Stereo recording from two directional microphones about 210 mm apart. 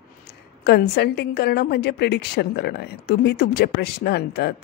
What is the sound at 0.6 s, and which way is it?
A woman's voice, 50° left (ahead or behind).